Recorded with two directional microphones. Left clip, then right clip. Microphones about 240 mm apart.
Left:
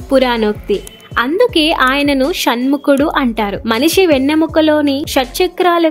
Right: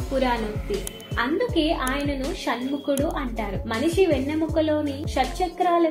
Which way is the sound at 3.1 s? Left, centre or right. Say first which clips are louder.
Left 14 dB; left.